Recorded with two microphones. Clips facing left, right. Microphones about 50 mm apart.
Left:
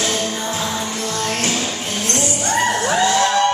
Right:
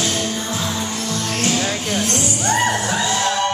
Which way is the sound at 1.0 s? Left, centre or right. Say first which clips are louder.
Left 2 dB; left.